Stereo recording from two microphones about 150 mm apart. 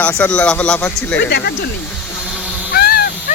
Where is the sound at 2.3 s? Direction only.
5° left (ahead or behind).